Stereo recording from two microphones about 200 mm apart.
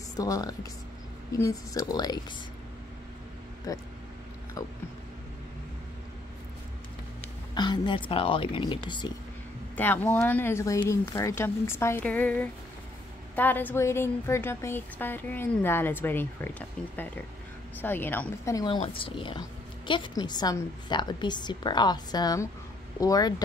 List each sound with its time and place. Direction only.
0.1 s a woman's voice: 15° left (ahead or behind)
3.7 s a woman's voice: 15° left (ahead or behind)
7.5 s a woman's voice: 20° left (ahead or behind)
9.8 s a woman's voice: 10° left (ahead or behind)